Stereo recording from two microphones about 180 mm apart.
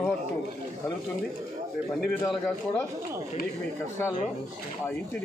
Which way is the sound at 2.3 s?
10° left (ahead or behind).